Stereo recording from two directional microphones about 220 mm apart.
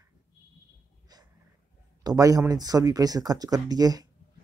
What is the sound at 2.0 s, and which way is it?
Speech, 15° right (ahead or behind).